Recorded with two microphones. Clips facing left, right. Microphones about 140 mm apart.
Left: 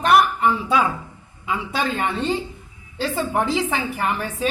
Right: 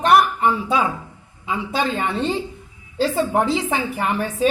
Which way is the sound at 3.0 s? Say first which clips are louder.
Right 4 dB; 35° right (ahead or behind).